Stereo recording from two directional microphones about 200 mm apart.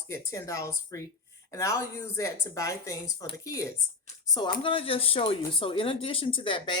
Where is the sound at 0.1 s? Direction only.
15° left (ahead or behind).